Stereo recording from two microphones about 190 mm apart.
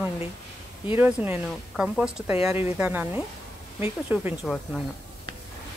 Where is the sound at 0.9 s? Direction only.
10° right (ahead or behind).